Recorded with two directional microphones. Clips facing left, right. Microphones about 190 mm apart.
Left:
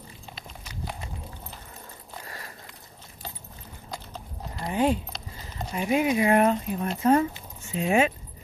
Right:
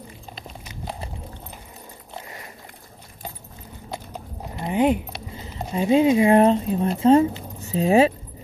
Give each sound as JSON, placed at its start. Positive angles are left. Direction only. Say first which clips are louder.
{"t": 0.7, "sound": "clip-clop", "louder": "right 3 dB", "side_deg": -30}
{"t": 2.1, "sound": "dog", "louder": "right 3 dB", "side_deg": -20}
{"t": 3.9, "sound": "clip-clop", "louder": "right 5 dB", "side_deg": -20}
{"t": 5.4, "sound": "speech", "louder": "right 6 dB", "side_deg": -25}